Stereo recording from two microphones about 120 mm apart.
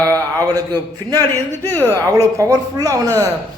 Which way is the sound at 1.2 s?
20° left (ahead or behind).